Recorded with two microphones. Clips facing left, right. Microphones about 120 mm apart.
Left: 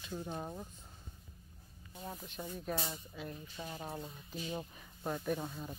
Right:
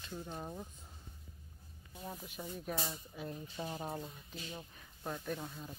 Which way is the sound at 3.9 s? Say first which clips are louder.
Left 1 dB; centre (ahead or behind).